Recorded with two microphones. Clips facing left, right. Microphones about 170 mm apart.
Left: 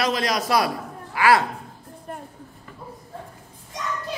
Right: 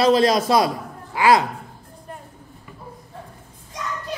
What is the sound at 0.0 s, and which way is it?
A man's voice, 30° right (ahead or behind).